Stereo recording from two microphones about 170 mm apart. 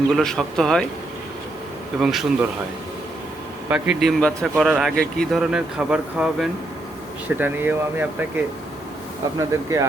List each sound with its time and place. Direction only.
0.2 s speech: 5° left (ahead or behind)
2.0 s speech: centre (ahead or behind)
3.7 s speech: 5° right (ahead or behind)
9.5 s speech: 20° right (ahead or behind)